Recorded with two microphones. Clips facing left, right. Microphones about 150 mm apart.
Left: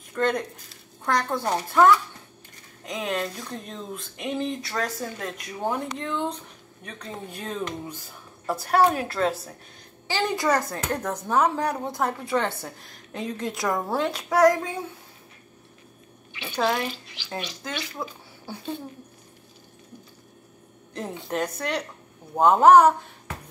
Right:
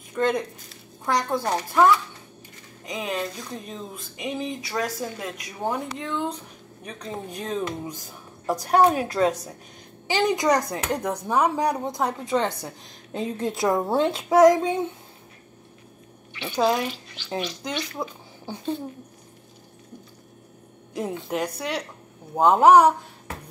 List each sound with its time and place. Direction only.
0.1 s speech: 10° right (ahead or behind)
7.1 s speech: 10° right (ahead or behind)
13.1 s a child's voice: 30° right (ahead or behind)
16.5 s speech: 15° right (ahead or behind)
17.9 s speech: 15° right (ahead or behind)
20.9 s speech: 10° right (ahead or behind)